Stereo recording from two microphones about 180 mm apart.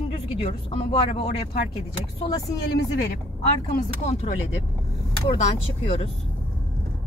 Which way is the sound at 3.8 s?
35° left (ahead or behind).